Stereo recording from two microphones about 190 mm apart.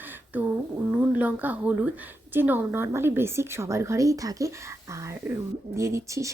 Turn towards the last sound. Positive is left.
turn(degrees=-15)  # may be behind; listen again after turning